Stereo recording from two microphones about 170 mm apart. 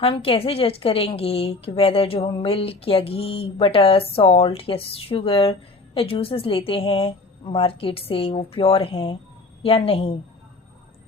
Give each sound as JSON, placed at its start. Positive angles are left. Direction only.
{"t": 0.0, "sound": "a woman's voice", "side_deg": 35}